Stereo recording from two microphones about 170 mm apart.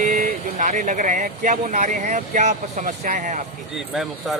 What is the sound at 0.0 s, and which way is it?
Speech, 45° right (ahead or behind).